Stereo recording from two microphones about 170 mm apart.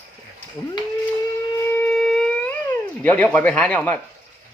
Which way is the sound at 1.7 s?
5° left (ahead or behind).